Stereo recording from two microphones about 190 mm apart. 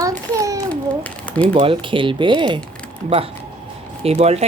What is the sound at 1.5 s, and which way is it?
Speech, 25° right (ahead or behind).